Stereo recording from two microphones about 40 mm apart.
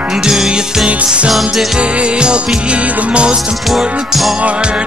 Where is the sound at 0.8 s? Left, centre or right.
Right.